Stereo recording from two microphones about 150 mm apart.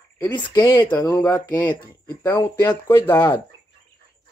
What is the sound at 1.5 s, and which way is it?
Speech, 15° left (ahead or behind).